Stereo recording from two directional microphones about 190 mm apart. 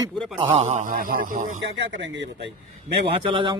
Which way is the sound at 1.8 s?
65° right (ahead or behind).